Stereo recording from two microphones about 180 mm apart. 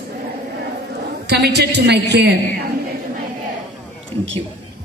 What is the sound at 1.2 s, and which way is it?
A woman's voice, 65° right (ahead or behind).